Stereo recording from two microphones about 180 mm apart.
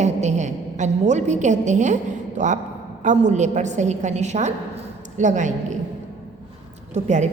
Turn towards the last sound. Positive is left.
turn(degrees=-40)  # may be behind; listen again after turning